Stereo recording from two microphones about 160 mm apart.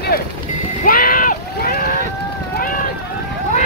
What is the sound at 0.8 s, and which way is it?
Vehicle, 60° left (ahead or behind).